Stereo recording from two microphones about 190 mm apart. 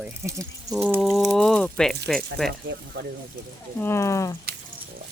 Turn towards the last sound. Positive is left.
turn(degrees=15)  # may be behind; listen again after turning